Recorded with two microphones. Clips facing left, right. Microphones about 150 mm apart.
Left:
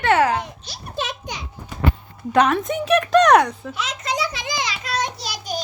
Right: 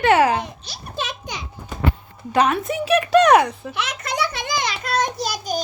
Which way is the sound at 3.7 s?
65° right (ahead or behind).